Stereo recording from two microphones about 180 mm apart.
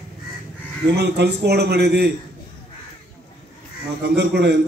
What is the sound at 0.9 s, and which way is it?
A man's voice, 65° right (ahead or behind).